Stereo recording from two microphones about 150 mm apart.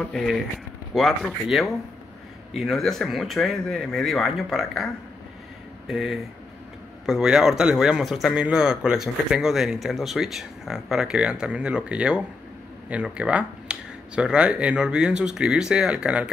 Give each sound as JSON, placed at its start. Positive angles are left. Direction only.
{"t": 0.0, "sound": "a man's voice", "side_deg": 5}